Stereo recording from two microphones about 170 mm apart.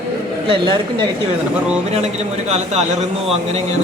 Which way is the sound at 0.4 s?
30° right (ahead or behind).